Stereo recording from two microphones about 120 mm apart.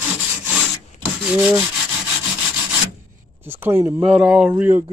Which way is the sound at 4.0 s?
10° right (ahead or behind).